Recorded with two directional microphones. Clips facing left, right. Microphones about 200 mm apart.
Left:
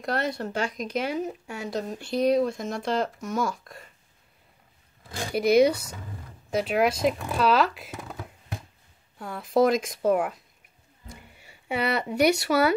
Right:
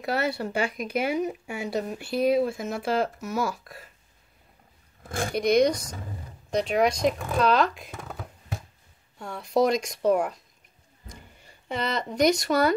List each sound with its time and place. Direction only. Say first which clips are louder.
0.0 s speech: right 1 dB; 5° right (ahead or behind)
5.3 s speech: left 2 dB; 5° left (ahead or behind)